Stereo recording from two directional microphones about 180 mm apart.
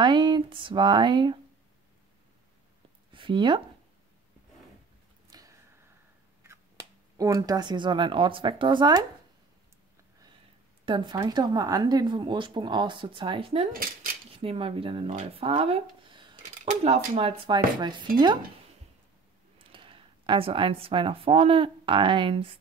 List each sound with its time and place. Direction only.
0.0 s speech: 25° right (ahead or behind)
3.1 s speech: 30° right (ahead or behind)
5.3 s a sound: 20° right (ahead or behind)
6.4 s speech: 15° right (ahead or behind)
10.9 s speech: 25° right (ahead or behind)
14.3 s dishes: 30° right (ahead or behind)
15.1 s speech: 30° right (ahead or behind)
16.6 s dishes: 35° right (ahead or behind)
19.6 s speech: 30° right (ahead or behind)